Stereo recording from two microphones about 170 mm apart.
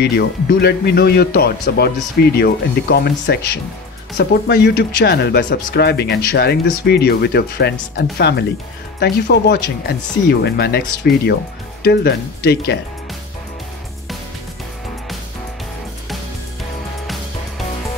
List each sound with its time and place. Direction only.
0.0 s speech: 75° left (ahead or behind)